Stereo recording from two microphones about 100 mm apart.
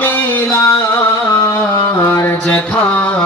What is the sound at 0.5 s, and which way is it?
Music, 35° left (ahead or behind).